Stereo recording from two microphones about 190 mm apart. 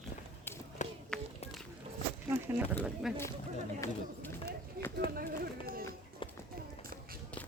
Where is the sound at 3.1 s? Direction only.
Centre (ahead or behind).